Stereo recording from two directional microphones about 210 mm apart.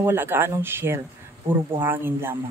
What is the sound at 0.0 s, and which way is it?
Speech, 10° right (ahead or behind).